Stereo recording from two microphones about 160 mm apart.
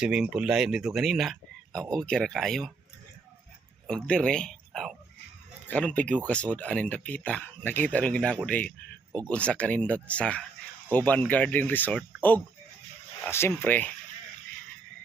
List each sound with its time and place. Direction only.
0.0 s speech: 5° right (ahead or behind)
3.8 s speech: 5° left (ahead or behind)
13.2 s speech: 15° left (ahead or behind)